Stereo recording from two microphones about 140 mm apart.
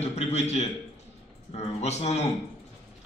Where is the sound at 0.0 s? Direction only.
50° left (ahead or behind).